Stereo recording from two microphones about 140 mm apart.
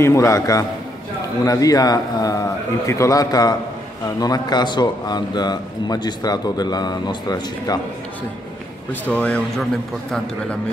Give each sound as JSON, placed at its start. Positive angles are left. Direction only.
{"t": 0.0, "sound": "speech", "side_deg": 20}
{"t": 9.0, "sound": "speech", "side_deg": 10}